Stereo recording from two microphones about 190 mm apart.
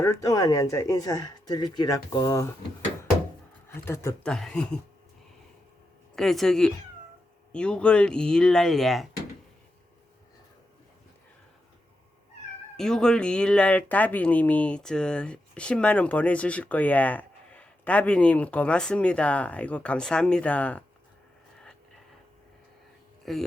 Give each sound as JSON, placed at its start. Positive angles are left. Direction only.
{"t": 0.0, "sound": "speech", "side_deg": 15}
{"t": 3.8, "sound": "speech", "side_deg": 15}
{"t": 6.1, "sound": "speech", "side_deg": 0}
{"t": 12.7, "sound": "speech", "side_deg": 5}
{"t": 23.2, "sound": "speech", "side_deg": 0}